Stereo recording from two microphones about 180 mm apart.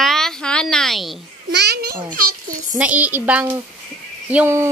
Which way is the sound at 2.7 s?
10° right (ahead or behind).